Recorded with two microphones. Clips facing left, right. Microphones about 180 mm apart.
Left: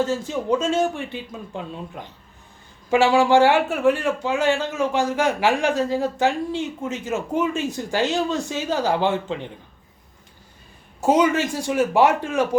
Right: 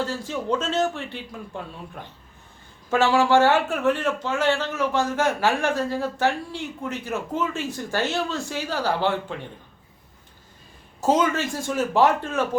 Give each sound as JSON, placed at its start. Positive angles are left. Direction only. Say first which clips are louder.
{"t": 0.0, "sound": "a man's voice", "louder": "left 4 dB", "side_deg": 20}
{"t": 11.0, "sound": "a man's voice", "louder": "left 3 dB", "side_deg": 10}